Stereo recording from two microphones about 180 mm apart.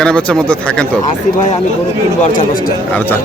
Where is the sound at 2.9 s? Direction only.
10° left (ahead or behind).